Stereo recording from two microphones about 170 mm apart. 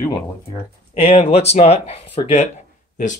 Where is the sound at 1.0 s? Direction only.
35° left (ahead or behind).